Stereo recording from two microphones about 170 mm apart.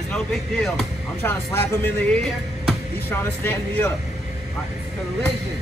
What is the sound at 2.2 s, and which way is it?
Music, centre (ahead or behind).